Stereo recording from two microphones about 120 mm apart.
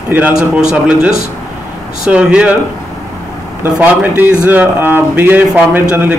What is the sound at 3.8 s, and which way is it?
Speech, 15° right (ahead or behind).